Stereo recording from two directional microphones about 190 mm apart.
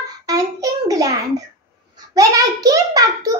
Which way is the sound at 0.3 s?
20° right (ahead or behind).